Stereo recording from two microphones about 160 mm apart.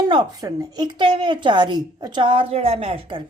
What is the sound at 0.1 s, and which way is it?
A woman's voice, 25° right (ahead or behind).